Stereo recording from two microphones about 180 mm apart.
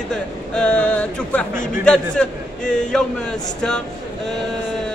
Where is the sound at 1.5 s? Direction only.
45° left (ahead or behind).